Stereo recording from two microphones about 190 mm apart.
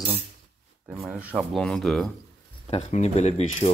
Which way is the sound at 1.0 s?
5° right (ahead or behind).